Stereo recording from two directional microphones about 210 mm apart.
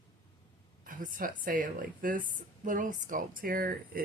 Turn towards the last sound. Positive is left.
turn(degrees=-45)  # may be behind; listen again after turning